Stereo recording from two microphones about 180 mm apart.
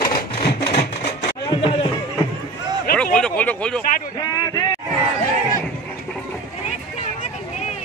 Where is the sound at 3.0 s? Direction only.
5° left (ahead or behind).